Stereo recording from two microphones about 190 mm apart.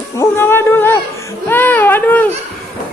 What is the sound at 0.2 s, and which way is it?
Music, 10° left (ahead or behind).